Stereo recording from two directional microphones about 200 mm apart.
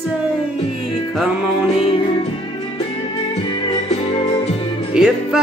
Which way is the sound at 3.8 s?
30° left (ahead or behind).